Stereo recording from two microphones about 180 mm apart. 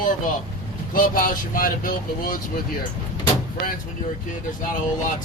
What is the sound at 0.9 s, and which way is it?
Speech, 50° left (ahead or behind).